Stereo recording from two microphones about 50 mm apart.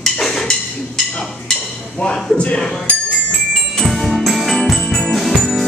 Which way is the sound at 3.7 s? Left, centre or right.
Centre.